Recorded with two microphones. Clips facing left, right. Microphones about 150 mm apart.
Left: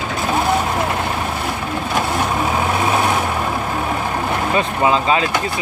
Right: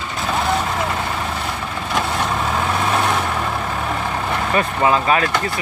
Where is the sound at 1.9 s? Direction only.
10° left (ahead or behind).